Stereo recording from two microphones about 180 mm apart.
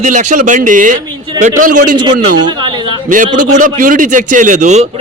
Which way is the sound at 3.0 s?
45° right (ahead or behind).